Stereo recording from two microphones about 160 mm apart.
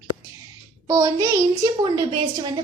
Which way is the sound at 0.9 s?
25° right (ahead or behind).